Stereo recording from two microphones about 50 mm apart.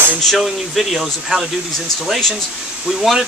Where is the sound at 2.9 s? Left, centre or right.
Centre.